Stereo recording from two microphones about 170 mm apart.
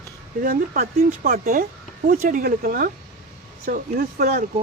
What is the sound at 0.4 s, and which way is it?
Speech, 60° right (ahead or behind).